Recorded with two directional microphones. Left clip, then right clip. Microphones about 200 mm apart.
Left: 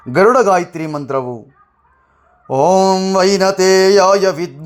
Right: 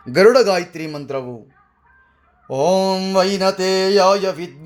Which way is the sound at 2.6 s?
35° left (ahead or behind).